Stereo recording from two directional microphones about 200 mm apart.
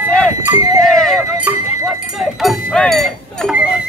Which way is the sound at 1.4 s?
Centre (ahead or behind).